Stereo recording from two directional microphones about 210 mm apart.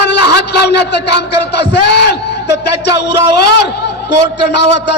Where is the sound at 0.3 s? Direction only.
50° left (ahead or behind).